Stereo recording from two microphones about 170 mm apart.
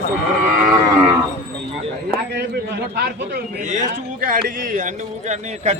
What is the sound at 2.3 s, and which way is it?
A man's voice, 70° right (ahead or behind).